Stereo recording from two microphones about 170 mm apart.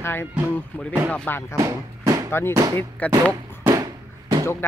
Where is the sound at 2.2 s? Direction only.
15° left (ahead or behind).